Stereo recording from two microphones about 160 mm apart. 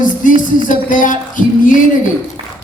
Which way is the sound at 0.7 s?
55° left (ahead or behind).